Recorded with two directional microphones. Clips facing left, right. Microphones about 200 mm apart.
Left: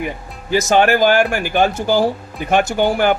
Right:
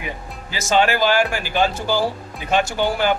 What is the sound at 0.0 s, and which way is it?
Speech, 55° left (ahead or behind).